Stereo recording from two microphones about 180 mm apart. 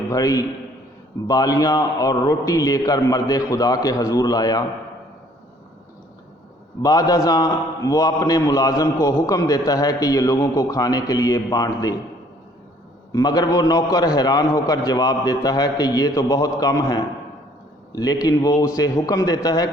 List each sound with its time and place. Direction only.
0.1 s a man's voice: 20° left (ahead or behind)
6.8 s a man's voice: 20° left (ahead or behind)
13.1 s a man's voice: 20° left (ahead or behind)